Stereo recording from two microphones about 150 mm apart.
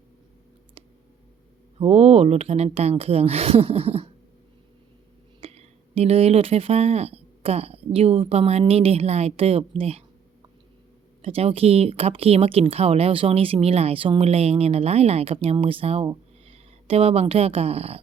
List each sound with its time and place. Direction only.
1.8 s speech: 45° right (ahead or behind)
5.4 s speech: 45° right (ahead or behind)
11.2 s speech: 40° right (ahead or behind)